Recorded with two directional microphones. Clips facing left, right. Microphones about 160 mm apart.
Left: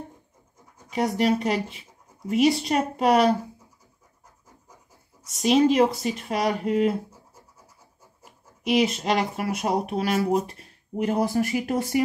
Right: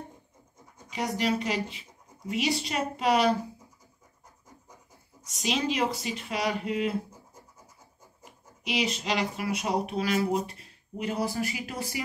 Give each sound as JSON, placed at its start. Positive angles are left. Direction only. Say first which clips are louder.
{"t": 0.9, "sound": "speech", "louder": "left 6 dB", "side_deg": 50}
{"t": 5.4, "sound": "speech", "louder": "left 10 dB", "side_deg": 50}
{"t": 8.6, "sound": "speech", "louder": "left 7 dB", "side_deg": 50}